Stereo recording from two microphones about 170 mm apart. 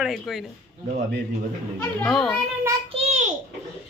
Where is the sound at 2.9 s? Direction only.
40° right (ahead or behind).